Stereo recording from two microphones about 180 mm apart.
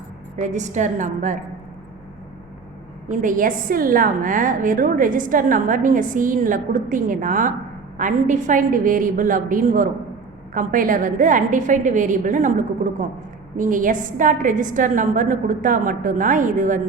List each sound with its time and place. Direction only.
0.4 s a woman's voice: 40° right (ahead or behind)
3.1 s a woman's voice: 45° right (ahead or behind)